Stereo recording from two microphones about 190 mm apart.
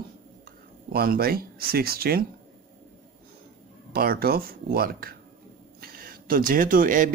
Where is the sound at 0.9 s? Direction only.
55° right (ahead or behind).